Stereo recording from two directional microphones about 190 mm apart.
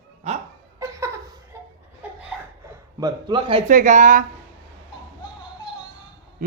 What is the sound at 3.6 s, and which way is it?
Speech, 40° right (ahead or behind).